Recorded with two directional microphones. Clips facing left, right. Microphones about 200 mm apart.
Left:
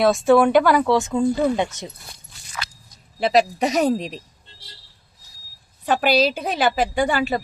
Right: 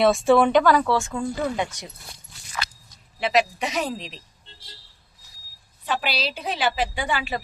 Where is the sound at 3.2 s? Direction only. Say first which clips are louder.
Left 4 dB; 35° left (ahead or behind).